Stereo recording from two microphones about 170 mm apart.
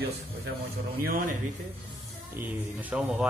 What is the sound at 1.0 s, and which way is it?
Speech, 55° right (ahead or behind).